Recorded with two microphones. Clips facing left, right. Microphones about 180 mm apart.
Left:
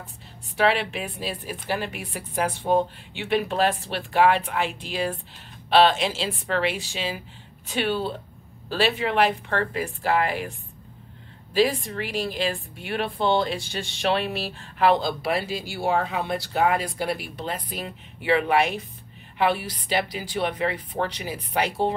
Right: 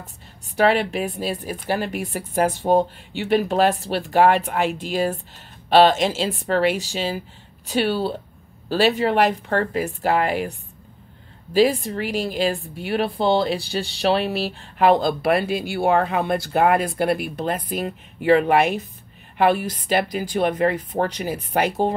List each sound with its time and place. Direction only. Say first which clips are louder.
0.6 s a woman's voice: right 4 dB; 45° right (ahead or behind)
11.5 s a woman's voice: right 4 dB; 40° right (ahead or behind)